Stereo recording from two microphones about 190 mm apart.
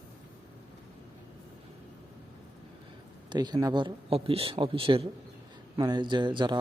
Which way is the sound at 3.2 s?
20° right (ahead or behind).